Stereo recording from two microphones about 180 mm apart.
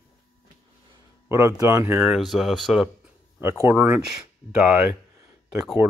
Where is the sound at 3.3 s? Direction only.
15° right (ahead or behind).